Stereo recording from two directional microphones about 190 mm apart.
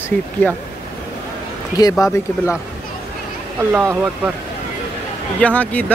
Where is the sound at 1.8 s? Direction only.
15° left (ahead or behind).